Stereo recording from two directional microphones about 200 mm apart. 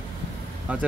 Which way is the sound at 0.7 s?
5° right (ahead or behind).